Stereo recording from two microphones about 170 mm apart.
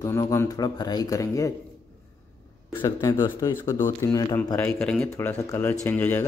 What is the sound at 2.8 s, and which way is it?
Speech, 20° left (ahead or behind).